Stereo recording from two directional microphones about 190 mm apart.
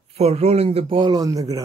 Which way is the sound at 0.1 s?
35° right (ahead or behind).